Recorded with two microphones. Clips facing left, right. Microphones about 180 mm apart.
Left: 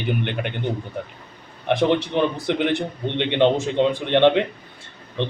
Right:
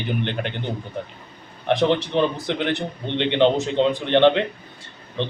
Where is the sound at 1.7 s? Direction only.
10° left (ahead or behind).